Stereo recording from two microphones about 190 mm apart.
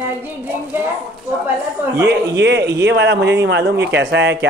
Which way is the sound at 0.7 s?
10° right (ahead or behind).